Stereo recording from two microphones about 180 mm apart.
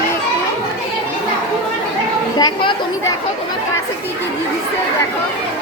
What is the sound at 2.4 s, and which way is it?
Speech, 30° left (ahead or behind).